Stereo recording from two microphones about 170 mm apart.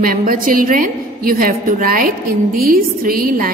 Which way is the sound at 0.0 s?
55° right (ahead or behind).